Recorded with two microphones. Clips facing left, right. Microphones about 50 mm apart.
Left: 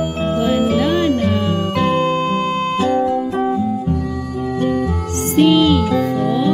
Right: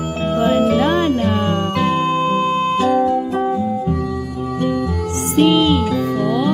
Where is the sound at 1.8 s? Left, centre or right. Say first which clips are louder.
Left 2 dB; centre.